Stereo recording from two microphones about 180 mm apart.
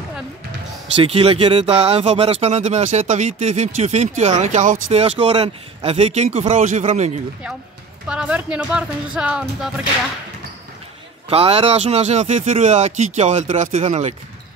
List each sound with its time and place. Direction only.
0.9 s speech: 30° right (ahead or behind)
8.1 s speech: 5° right (ahead or behind)
11.2 s speech: 35° right (ahead or behind)